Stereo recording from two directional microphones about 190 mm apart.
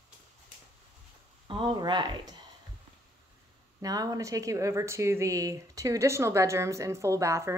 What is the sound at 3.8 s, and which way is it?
Speech, 20° right (ahead or behind).